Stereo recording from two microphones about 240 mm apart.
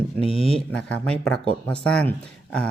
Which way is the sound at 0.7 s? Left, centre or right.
Centre.